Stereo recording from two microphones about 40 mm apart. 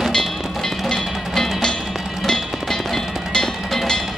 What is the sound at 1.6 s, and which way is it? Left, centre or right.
Music, centre.